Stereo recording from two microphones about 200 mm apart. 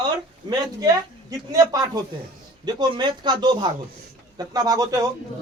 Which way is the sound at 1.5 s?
20° right (ahead or behind).